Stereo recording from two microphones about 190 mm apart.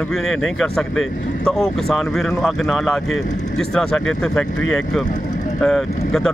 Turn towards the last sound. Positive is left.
turn(degrees=0)  # may be behind; listen again after turning